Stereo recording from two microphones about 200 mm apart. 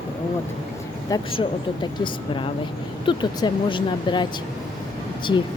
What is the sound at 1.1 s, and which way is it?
Speech, 25° left (ahead or behind).